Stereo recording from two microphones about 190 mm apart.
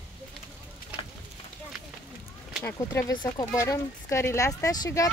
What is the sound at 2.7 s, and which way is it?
Speech, 15° left (ahead or behind).